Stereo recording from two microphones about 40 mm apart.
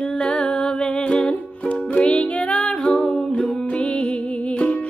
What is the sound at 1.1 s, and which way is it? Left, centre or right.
Music, left.